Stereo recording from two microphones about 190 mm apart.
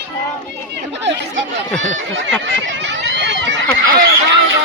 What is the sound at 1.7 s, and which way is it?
Speech, 40° right (ahead or behind).